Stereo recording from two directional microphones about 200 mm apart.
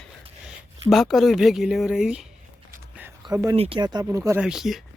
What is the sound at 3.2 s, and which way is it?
Speech, 15° right (ahead or behind).